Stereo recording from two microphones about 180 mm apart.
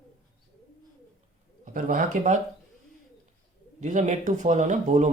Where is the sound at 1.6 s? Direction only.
50° right (ahead or behind).